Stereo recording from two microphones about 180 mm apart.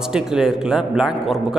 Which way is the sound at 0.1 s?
5° right (ahead or behind).